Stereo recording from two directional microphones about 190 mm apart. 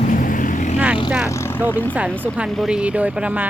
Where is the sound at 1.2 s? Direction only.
15° left (ahead or behind).